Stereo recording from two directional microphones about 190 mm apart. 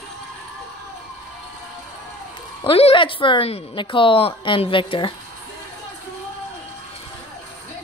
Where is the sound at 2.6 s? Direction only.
30° left (ahead or behind).